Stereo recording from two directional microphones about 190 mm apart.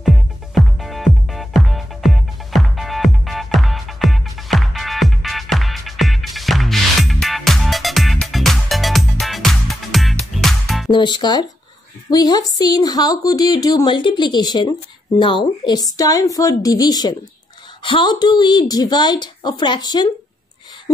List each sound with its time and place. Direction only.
0.0 s music: centre (ahead or behind)
10.9 s a woman's voice: 25° left (ahead or behind)